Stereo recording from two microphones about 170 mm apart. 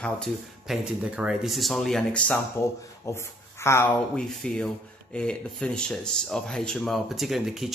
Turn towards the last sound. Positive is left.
turn(degrees=0)  # may be behind; listen again after turning